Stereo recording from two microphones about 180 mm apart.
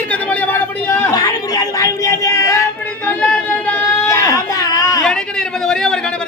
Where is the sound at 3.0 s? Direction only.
10° left (ahead or behind).